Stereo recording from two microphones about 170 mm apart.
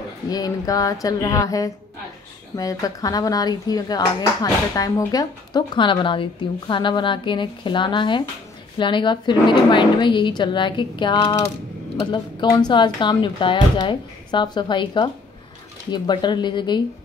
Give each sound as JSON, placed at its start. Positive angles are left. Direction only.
{"t": 0.3, "sound": "speech", "side_deg": 20}